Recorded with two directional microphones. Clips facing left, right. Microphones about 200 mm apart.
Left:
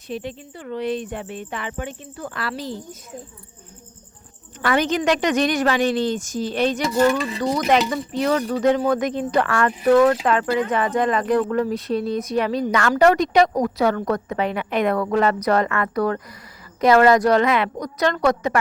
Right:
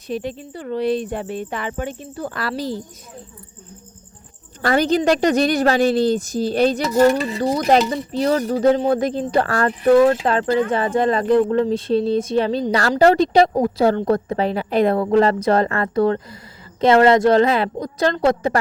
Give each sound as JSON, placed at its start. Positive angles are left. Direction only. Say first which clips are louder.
{"t": 0.1, "sound": "a woman's voice", "louder": "right 4 dB", "side_deg": -40}
{"t": 4.6, "sound": "a woman's voice", "louder": "right 3 dB", "side_deg": -35}